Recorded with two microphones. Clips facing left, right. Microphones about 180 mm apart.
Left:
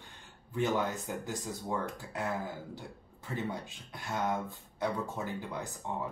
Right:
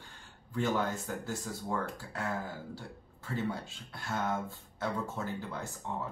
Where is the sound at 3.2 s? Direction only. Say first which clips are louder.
Right 1 dB; 20° left (ahead or behind).